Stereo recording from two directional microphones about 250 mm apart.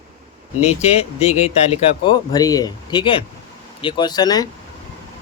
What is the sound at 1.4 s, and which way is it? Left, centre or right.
Speech, left.